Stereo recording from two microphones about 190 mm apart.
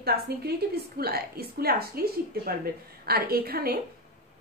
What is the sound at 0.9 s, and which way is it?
A woman's voice, 55° right (ahead or behind).